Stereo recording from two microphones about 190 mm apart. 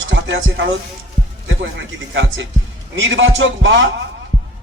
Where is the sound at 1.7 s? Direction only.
75° right (ahead or behind).